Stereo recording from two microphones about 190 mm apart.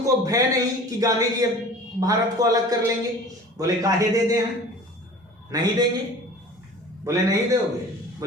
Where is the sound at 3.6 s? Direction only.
20° right (ahead or behind).